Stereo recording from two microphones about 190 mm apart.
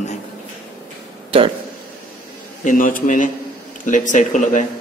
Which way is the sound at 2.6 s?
45° left (ahead or behind).